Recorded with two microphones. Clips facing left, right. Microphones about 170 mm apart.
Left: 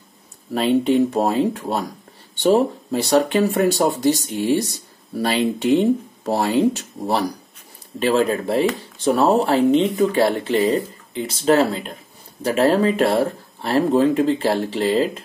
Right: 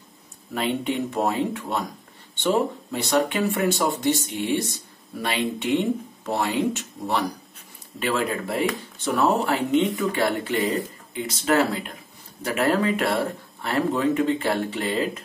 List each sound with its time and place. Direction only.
0.5 s speech: 35° left (ahead or behind)